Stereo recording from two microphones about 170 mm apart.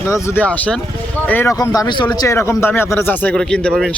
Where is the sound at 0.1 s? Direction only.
15° left (ahead or behind).